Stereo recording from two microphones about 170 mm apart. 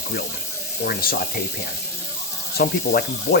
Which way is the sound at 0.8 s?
60° left (ahead or behind).